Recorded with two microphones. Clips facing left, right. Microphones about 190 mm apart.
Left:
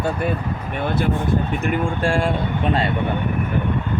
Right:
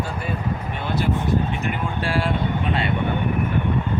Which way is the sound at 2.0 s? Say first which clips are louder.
Left 2 dB; 45° left (ahead or behind).